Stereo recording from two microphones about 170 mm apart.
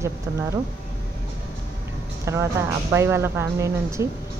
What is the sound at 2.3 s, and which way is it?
Speech, 15° right (ahead or behind).